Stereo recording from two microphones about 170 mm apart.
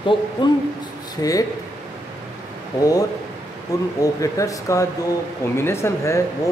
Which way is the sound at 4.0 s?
20° left (ahead or behind).